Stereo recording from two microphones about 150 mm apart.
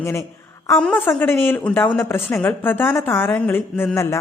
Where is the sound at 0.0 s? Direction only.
20° left (ahead or behind).